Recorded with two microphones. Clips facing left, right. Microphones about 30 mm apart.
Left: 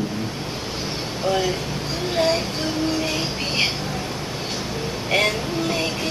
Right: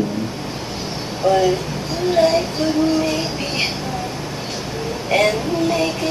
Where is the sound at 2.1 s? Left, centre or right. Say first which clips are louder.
Right 5 dB; centre.